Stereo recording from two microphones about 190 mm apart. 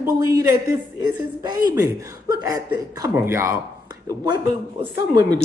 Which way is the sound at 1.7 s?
20° right (ahead or behind).